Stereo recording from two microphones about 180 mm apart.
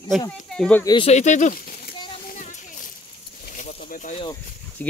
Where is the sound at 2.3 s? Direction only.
45° left (ahead or behind).